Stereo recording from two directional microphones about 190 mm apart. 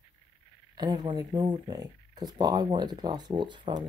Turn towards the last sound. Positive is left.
turn(degrees=-25)  # may be behind; listen again after turning